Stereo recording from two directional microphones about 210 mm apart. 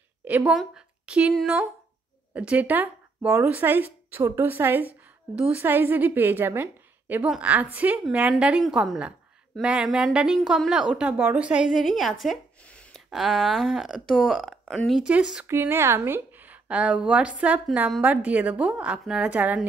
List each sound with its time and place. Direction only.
0.2 s a woman's voice: 10° right (ahead or behind)